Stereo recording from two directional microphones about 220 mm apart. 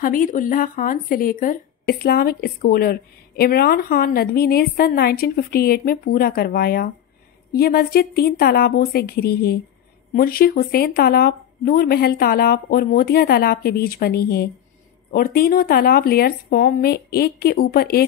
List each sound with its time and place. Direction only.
0.0 s speech: 40° left (ahead or behind)